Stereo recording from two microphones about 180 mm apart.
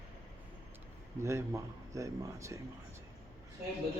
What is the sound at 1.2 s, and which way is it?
Speech, 15° right (ahead or behind).